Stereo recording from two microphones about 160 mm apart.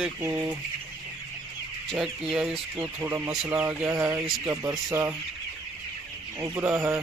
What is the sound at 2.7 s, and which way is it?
Speech, 15° right (ahead or behind).